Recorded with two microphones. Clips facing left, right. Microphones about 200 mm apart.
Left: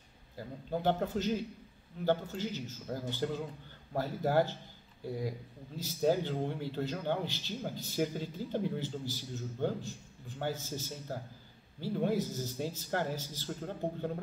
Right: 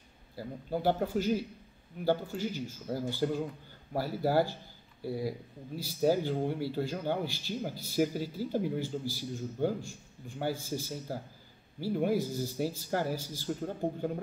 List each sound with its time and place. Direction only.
0.4 s a man's voice: 10° right (ahead or behind)